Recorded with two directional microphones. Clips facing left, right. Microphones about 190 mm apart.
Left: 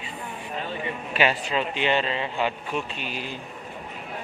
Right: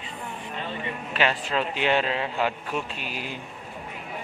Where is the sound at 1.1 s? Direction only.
10° left (ahead or behind); by 3.3 s 5° right (ahead or behind).